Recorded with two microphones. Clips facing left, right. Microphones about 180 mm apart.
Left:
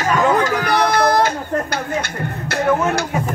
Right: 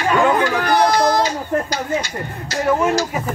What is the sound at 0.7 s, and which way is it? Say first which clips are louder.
Speech: right 1 dB; 60° left (ahead or behind).